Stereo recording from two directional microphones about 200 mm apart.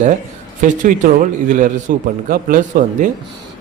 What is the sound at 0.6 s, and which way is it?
Speech, 40° right (ahead or behind).